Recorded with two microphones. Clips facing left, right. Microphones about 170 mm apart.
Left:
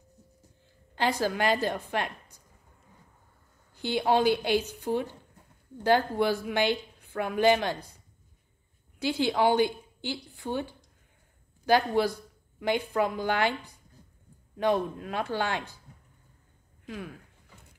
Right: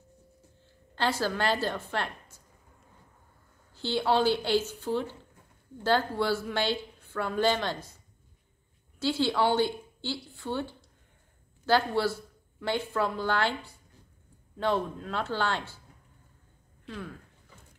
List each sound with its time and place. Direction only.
0.9 s a woman's voice: 15° left (ahead or behind)
3.7 s a woman's voice: 15° left (ahead or behind)
9.0 s a woman's voice: 15° left (ahead or behind)
16.8 s speech: 15° left (ahead or behind)